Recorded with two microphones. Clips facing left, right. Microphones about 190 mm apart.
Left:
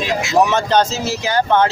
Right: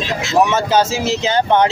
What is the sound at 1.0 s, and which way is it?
Speech, 20° right (ahead or behind).